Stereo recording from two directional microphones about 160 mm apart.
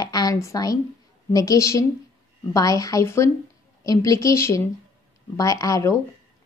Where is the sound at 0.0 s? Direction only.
25° left (ahead or behind).